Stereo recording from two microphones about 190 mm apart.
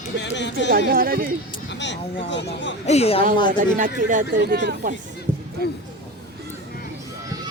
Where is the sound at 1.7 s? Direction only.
70° left (ahead or behind).